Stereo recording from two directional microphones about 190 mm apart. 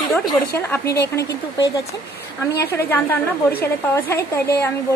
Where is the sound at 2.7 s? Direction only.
10° left (ahead or behind).